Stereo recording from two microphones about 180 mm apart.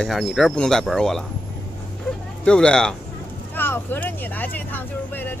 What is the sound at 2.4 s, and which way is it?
A child's voice, 5° left (ahead or behind).